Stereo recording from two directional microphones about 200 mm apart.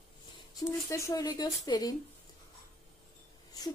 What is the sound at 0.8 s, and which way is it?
A woman's voice, 15° left (ahead or behind).